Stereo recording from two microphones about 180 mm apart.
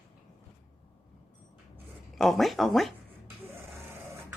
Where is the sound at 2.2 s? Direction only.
Centre (ahead or behind).